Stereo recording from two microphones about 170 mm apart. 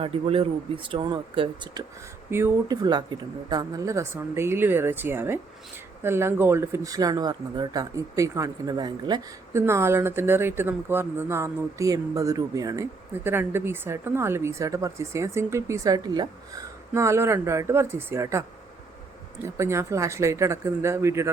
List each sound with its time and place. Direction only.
0.0 s speech: 35° right (ahead or behind)
2.3 s speech: 15° right (ahead or behind)
2.8 s speech: 25° right (ahead or behind)
19.5 s speech: 15° right (ahead or behind)